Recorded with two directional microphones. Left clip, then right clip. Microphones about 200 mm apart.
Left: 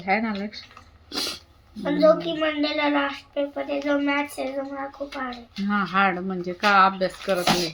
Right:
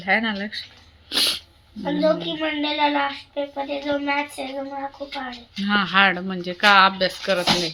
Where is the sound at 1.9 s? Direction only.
35° left (ahead or behind).